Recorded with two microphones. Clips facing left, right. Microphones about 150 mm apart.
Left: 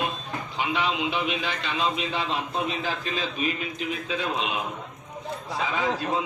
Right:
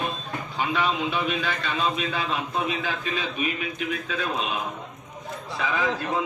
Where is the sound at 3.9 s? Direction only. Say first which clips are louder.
Left 2 dB; 25° left (ahead or behind).